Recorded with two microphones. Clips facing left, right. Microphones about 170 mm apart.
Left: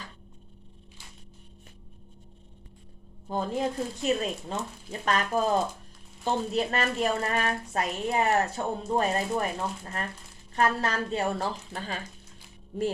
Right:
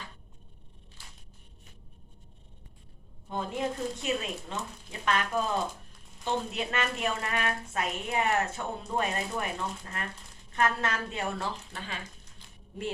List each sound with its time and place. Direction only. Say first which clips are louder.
3.3 s a woman's voice: left 3 dB; 35° left (ahead or behind)